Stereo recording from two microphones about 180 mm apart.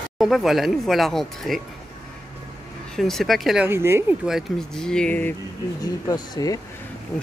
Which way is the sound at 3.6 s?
15° right (ahead or behind).